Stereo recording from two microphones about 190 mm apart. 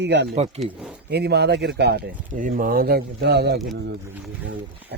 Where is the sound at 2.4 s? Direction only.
45° right (ahead or behind).